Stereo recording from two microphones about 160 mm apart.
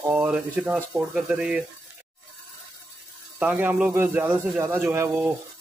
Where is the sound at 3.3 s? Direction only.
10° right (ahead or behind).